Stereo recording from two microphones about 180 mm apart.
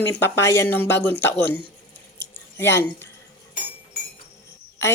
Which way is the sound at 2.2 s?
15° left (ahead or behind).